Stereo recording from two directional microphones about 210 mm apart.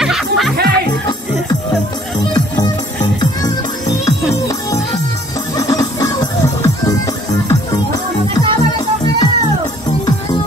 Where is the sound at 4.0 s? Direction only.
15° left (ahead or behind).